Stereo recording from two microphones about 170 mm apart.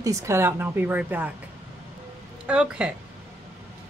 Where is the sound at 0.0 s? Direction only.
15° right (ahead or behind).